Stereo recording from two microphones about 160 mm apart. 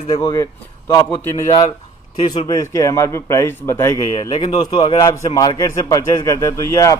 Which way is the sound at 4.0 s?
30° left (ahead or behind).